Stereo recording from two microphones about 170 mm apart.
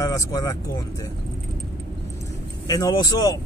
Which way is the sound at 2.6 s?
20° left (ahead or behind).